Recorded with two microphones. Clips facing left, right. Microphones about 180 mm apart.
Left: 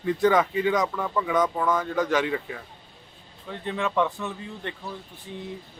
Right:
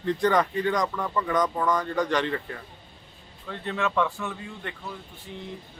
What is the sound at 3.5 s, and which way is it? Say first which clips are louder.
Speech: even; 15° left (ahead or behind).